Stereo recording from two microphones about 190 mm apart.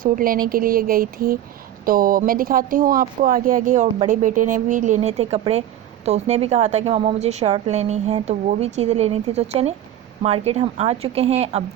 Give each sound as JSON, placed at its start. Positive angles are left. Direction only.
{"t": 0.0, "sound": "a woman's voice", "side_deg": -50}